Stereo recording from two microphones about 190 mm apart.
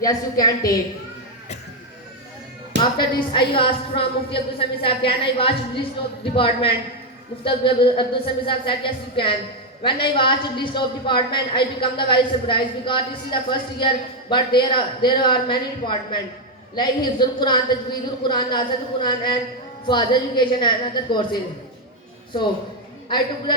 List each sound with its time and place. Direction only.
0.0 s a man's voice: 20° left (ahead or behind)
3.0 s a man's voice: 25° left (ahead or behind)
23.0 s a man's voice: 25° left (ahead or behind)